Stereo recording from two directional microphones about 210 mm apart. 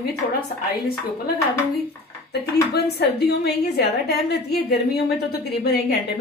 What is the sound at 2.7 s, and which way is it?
A woman's voice, 50° left (ahead or behind).